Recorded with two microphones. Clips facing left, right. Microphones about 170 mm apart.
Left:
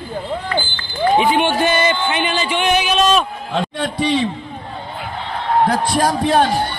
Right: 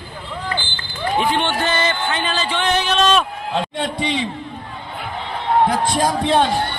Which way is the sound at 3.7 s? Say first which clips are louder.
Left 4 dB; 20° right (ahead or behind).